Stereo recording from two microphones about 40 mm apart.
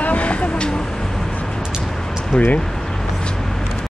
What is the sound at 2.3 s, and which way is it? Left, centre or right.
Speech, left.